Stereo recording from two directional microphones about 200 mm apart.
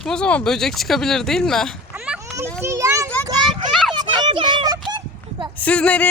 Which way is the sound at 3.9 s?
20° right (ahead or behind).